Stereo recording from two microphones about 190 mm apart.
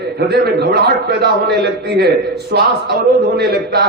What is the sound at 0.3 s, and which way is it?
A man's voice, 60° right (ahead or behind).